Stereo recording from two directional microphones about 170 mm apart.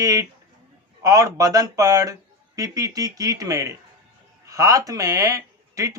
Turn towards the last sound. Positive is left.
turn(degrees=-20)  # may be behind; listen again after turning